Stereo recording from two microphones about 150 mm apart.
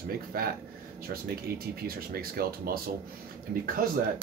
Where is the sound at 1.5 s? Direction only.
90° right.